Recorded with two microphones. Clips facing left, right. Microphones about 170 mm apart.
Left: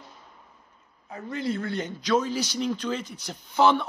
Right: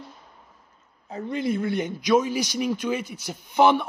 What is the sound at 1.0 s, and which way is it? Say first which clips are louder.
A man's voice: right 3 dB; 20° right (ahead or behind).